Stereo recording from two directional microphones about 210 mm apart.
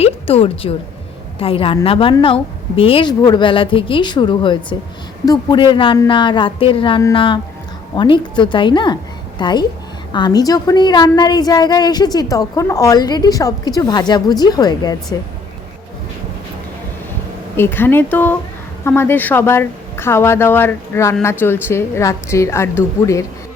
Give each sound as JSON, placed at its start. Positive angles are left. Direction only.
{"t": 0.0, "sound": "a sound", "side_deg": 30}
{"t": 1.4, "sound": "a woman's voice", "side_deg": 25}
{"t": 17.6, "sound": "speech", "side_deg": 10}